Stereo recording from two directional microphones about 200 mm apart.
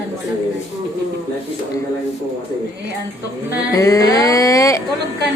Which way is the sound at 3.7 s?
15° left (ahead or behind).